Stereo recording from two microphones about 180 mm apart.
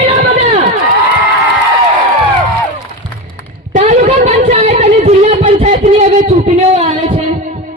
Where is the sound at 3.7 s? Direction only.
40° right (ahead or behind).